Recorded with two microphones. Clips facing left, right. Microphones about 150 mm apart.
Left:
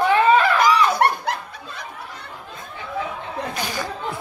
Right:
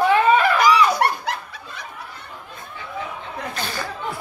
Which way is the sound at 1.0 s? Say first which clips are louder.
Left 2 dB; 55° left (ahead or behind).